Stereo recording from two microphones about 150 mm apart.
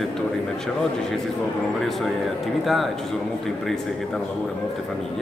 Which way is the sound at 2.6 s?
Centre (ahead or behind).